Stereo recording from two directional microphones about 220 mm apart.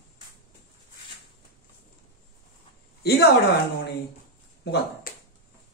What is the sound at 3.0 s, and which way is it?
Speech, 45° left (ahead or behind).